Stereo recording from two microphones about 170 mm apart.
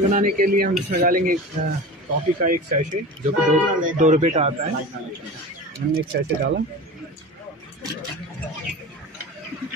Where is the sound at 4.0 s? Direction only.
45° right (ahead or behind).